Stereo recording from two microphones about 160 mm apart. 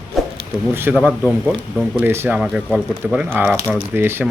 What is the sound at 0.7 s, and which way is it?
Speech, 15° right (ahead or behind).